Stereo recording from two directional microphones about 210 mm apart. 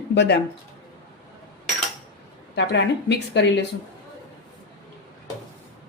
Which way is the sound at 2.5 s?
55° left (ahead or behind).